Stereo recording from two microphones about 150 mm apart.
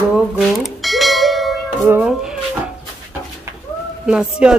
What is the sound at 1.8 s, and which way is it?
Speech, 10° right (ahead or behind).